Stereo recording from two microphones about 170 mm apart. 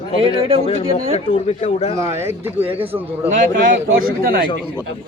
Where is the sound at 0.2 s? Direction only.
30° right (ahead or behind).